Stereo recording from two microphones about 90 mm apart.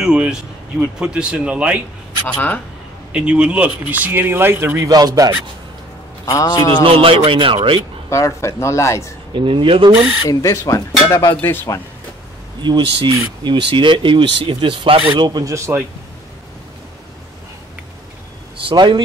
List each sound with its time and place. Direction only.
0.0 s speech: 10° right (ahead or behind)
2.2 s speech: 20° left (ahead or behind)
3.1 s speech: 10° right (ahead or behind)
4.8 s speech: 45° right (ahead or behind)
6.3 s a man's voice: 45° left (ahead or behind)
6.8 s speech: 85° right
8.1 s a man's voice: 35° left (ahead or behind)
9.3 s speech: 70° right (ahead or behind)
10.4 s a man's voice: 35° left (ahead or behind)
11.4 s speech: 30° left (ahead or behind)
12.6 s speech: 55° right (ahead or behind); by 15.2 s 80° right
15.2 s speech: 50° right (ahead or behind)
15.5 s speech: 30° right (ahead or behind)
18.7 s speech: 60° right (ahead or behind)